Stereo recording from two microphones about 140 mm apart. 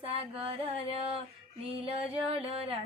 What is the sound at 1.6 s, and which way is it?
Female singing, 45° right (ahead or behind).